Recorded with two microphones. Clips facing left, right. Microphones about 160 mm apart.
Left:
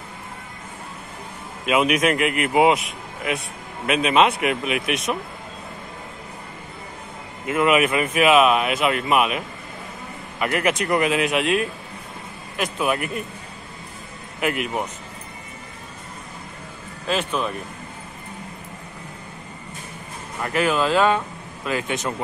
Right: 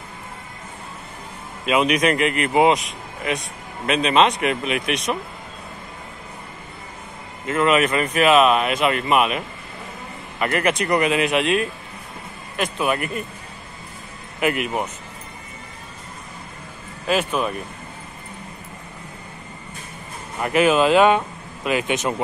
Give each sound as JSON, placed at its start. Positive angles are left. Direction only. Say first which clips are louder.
{"t": 1.7, "sound": "speech", "louder": "right 1 dB", "side_deg": 5}
{"t": 7.4, "sound": "speech", "louder": "even", "side_deg": 10}
{"t": 10.4, "sound": "speech", "louder": "right 1 dB", "side_deg": 5}
{"t": 14.4, "sound": "speech", "louder": "right 2 dB", "side_deg": 0}
{"t": 17.0, "sound": "speech", "louder": "right 3 dB", "side_deg": -10}
{"t": 20.4, "sound": "speech", "louder": "right 4 dB", "side_deg": -20}